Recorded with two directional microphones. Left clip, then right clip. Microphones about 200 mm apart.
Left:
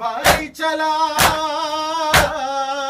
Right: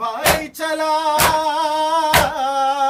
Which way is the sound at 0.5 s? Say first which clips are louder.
Left 1 dB; 40° right (ahead or behind).